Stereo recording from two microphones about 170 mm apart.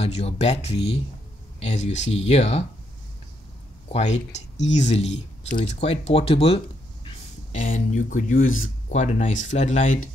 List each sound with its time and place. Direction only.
0.0 s speech: 40° left (ahead or behind)
3.9 s speech: 40° left (ahead or behind)
7.5 s speech: 50° left (ahead or behind)